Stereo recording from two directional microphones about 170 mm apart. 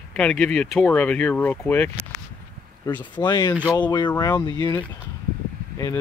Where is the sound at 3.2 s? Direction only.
25° left (ahead or behind).